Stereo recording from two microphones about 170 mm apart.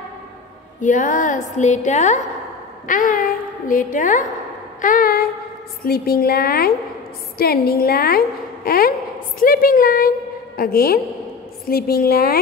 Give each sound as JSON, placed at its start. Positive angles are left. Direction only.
{"t": 0.7, "sound": "a woman's voice", "side_deg": 50}